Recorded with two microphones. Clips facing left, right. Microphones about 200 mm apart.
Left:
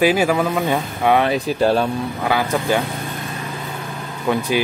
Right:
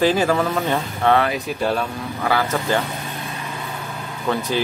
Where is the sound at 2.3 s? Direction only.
15° left (ahead or behind).